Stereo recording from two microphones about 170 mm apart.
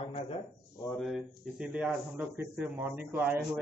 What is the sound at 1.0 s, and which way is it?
A man's voice, 5° right (ahead or behind).